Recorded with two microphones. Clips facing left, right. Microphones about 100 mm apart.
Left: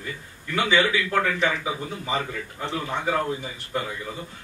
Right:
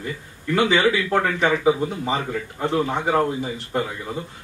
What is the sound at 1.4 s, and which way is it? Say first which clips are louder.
A man's voice: right 8 dB; 35° right (ahead or behind).